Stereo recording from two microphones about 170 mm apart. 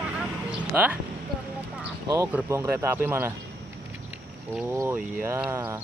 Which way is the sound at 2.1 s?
15° right (ahead or behind).